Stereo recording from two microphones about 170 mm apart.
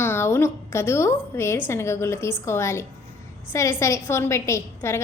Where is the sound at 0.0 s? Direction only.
15° left (ahead or behind).